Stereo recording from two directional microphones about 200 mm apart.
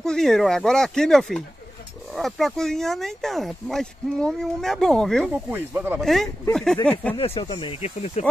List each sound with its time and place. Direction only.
0.0 s speech: centre (ahead or behind)
5.5 s speech: 10° right (ahead or behind)
5.9 s speech: centre (ahead or behind)
7.2 s speech: 25° left (ahead or behind)